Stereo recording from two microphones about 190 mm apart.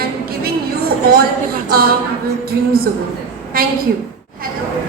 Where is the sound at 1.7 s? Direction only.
55° right (ahead or behind).